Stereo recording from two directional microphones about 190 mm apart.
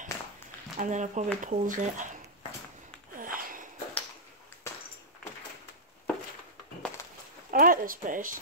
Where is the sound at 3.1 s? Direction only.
45° right (ahead or behind).